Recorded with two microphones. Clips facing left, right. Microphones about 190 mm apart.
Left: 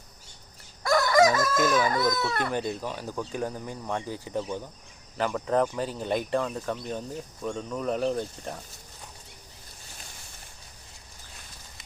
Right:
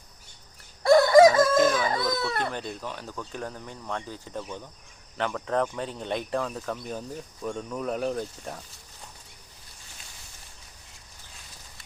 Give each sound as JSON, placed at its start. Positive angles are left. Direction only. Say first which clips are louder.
{"t": 0.8, "sound": "chicken", "louder": "right 6 dB", "side_deg": -30}
{"t": 2.5, "sound": "speech", "louder": "left 4 dB", "side_deg": 10}